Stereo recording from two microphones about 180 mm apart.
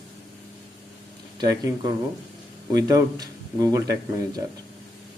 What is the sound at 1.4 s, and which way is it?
Speech, 20° right (ahead or behind).